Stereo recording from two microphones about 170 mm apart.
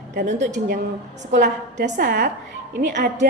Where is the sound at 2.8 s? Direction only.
75° right (ahead or behind).